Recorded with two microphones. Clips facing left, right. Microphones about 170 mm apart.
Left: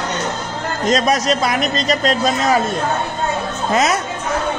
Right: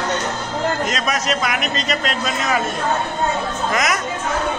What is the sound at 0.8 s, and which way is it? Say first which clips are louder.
A man's voice: left 6 dB; 35° left (ahead or behind).